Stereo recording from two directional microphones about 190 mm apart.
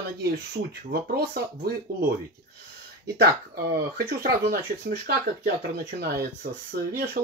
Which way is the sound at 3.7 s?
55° right (ahead or behind).